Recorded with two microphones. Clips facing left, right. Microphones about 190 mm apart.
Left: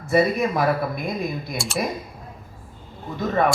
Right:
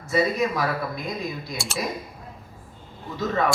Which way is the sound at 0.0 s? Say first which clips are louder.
Left 3 dB; 55° left (ahead or behind).